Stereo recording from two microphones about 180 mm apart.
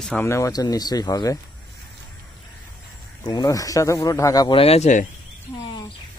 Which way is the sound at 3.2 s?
20° left (ahead or behind).